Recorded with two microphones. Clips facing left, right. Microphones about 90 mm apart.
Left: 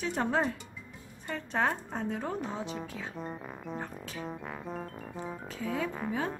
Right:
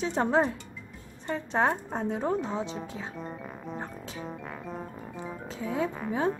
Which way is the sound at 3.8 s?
20° right (ahead or behind).